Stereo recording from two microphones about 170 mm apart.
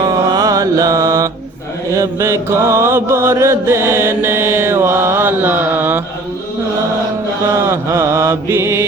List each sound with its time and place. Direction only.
0.0 s mantra: 20° right (ahead or behind)
7.7 s mantra: 15° right (ahead or behind)